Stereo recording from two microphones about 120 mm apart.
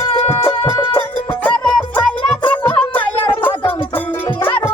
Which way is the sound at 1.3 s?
10° left (ahead or behind).